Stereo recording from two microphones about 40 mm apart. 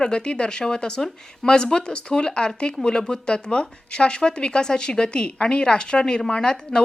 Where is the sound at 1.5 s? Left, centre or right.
Left.